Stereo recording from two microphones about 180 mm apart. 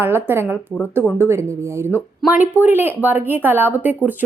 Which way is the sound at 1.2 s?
15° right (ahead or behind).